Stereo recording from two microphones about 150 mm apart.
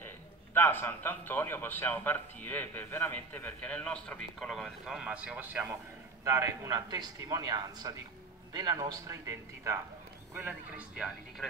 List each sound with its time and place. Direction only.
0.6 s a man's voice: 15° left (ahead or behind); by 9.8 s 20° right (ahead or behind)